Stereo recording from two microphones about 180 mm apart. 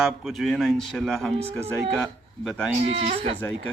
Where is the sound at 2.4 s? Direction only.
Centre (ahead or behind).